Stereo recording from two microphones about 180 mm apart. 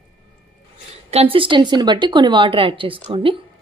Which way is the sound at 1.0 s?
35° right (ahead or behind).